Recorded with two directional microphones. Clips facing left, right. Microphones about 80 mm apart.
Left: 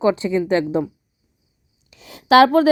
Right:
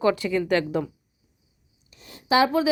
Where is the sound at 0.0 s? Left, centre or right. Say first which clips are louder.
Left 4 dB; left.